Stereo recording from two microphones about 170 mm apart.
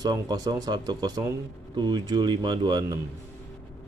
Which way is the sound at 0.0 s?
25° right (ahead or behind).